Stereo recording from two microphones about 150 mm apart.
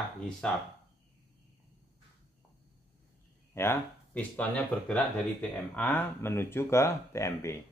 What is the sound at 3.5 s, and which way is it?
Speech, 15° left (ahead or behind).